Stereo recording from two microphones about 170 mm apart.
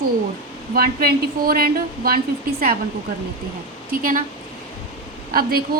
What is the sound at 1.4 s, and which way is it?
Speech, 60° right (ahead or behind).